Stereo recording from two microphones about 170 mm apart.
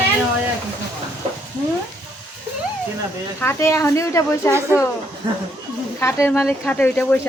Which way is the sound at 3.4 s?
15° left (ahead or behind).